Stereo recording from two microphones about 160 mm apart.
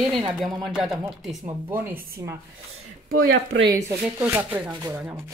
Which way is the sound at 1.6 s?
15° right (ahead or behind).